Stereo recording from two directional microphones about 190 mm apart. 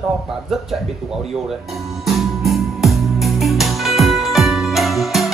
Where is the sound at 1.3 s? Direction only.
Centre (ahead or behind).